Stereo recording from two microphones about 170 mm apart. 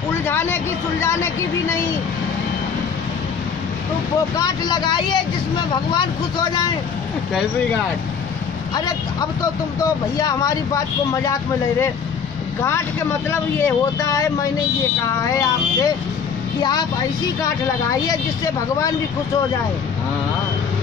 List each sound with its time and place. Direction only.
0.1 s a sound: 15° left (ahead or behind)
4.4 s speech: 25° left (ahead or behind)
8.7 s speech: 25° left (ahead or behind)
13.3 s speech: 15° left (ahead or behind)
18.0 s speech: 20° left (ahead or behind)